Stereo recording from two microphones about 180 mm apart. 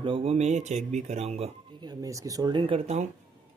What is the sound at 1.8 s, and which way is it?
Speech, 20° right (ahead or behind).